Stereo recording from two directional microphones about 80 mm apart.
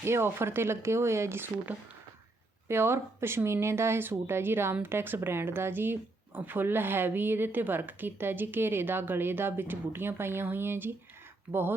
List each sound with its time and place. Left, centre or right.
0.0 s speech: right
2.6 s speech: right